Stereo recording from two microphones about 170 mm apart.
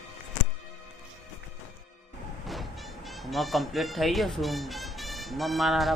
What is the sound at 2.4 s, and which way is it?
Speech, centre (ahead or behind).